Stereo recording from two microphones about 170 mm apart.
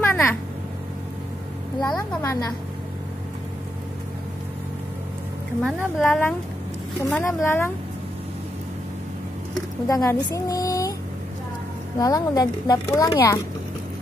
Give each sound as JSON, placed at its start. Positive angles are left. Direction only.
{"t": 0.1, "sound": "speech", "side_deg": 15}
{"t": 1.8, "sound": "a woman's voice", "side_deg": 5}
{"t": 6.0, "sound": "a woman's voice", "side_deg": 10}
{"t": 9.8, "sound": "speech", "side_deg": 20}
{"t": 12.0, "sound": "speech", "side_deg": 20}